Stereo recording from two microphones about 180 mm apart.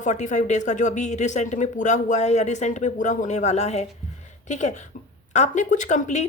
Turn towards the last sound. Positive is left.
turn(degrees=40)  # may be behind; listen again after turning